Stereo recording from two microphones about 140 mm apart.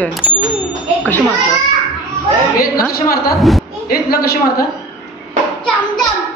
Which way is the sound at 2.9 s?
90° left.